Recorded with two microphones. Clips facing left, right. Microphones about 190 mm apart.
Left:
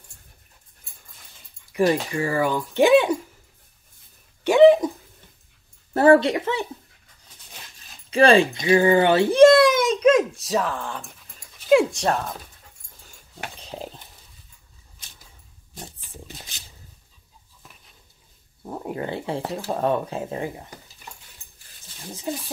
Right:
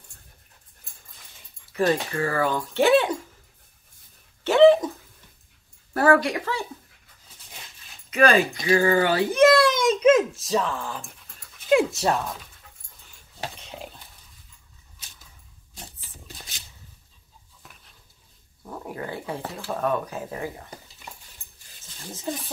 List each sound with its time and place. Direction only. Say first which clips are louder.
1.7 s speech: left 2 dB; 15° left (ahead or behind)
4.5 s dog: left 2 dB; 15° left (ahead or behind)
5.9 s a woman's voice: left 4 dB; 25° left (ahead or behind)
8.1 s speech: left 4 dB; 30° left (ahead or behind)
9.6 s a child's voice: left 4 dB; 10° left (ahead or behind)
9.8 s a child's voice: even; centre (ahead or behind)
11.3 s dog: left 3 dB; centre (ahead or behind)
18.6 s speech: left 4 dB; 25° left (ahead or behind)
22.3 s speech: left 1 dB; 20° left (ahead or behind)